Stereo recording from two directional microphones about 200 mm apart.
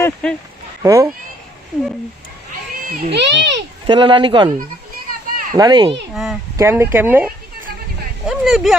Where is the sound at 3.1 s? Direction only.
60° right (ahead or behind).